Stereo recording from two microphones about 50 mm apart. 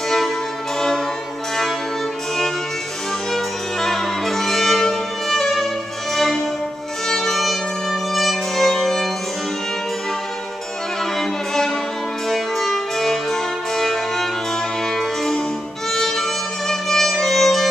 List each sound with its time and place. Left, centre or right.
0.7 s music: centre
3.3 s music: centre
11.1 s music: centre
15.0 s harpsichord: centre
15.9 s violin: centre